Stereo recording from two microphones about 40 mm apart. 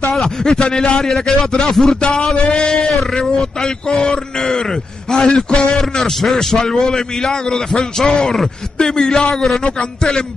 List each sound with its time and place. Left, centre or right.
0.2 s a man's voice: centre
2.0 s a man's voice: left